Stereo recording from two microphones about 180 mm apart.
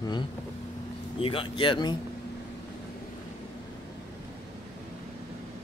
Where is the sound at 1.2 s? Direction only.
30° left (ahead or behind).